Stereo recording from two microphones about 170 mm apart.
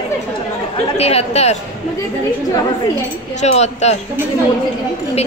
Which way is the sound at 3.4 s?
40° left (ahead or behind).